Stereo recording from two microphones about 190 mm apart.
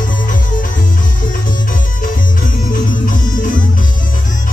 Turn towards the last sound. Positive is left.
turn(degrees=45)  # may be behind; listen again after turning